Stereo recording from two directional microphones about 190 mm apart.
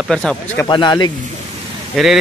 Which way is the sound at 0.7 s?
20° left (ahead or behind).